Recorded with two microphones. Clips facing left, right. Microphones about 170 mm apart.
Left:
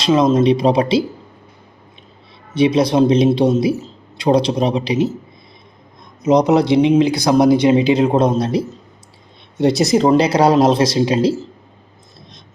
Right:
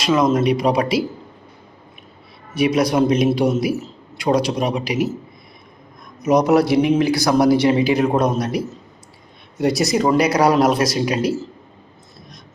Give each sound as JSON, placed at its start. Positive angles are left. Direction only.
{"t": 0.0, "sound": "a man's voice", "side_deg": 25}
{"t": 2.6, "sound": "a man's voice", "side_deg": 25}
{"t": 6.2, "sound": "a man's voice", "side_deg": 20}